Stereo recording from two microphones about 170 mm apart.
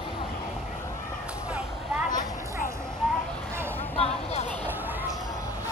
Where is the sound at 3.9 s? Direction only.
35° left (ahead or behind).